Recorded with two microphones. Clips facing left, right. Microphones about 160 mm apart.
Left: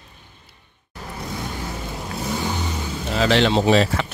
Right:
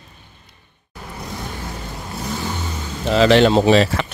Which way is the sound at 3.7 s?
85° right.